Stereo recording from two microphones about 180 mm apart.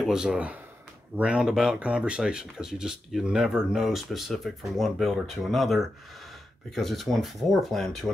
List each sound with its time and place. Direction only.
0.0 s speech: 5° right (ahead or behind)